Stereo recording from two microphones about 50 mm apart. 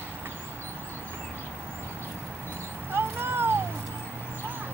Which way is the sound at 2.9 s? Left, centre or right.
Right.